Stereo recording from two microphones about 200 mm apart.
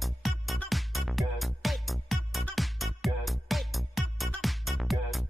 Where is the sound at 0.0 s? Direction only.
Centre (ahead or behind).